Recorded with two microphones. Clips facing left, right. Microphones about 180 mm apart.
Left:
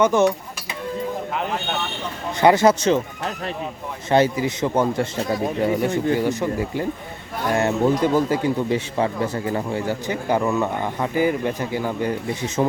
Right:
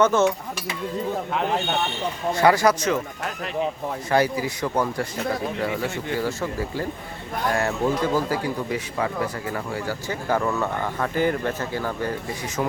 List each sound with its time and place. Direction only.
0.0 s speech: 15° left (ahead or behind)
1.3 s speech: centre (ahead or behind)
2.3 s speech: 20° left (ahead or behind)